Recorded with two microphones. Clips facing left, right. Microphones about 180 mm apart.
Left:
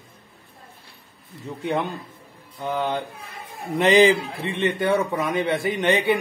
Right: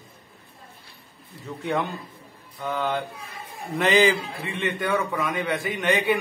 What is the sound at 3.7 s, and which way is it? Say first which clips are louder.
Speech: left 4 dB; 25° left (ahead or behind).